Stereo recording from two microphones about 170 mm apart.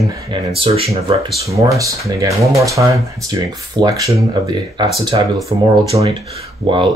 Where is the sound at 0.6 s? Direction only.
35° right (ahead or behind).